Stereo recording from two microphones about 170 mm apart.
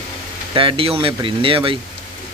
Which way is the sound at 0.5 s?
30° right (ahead or behind).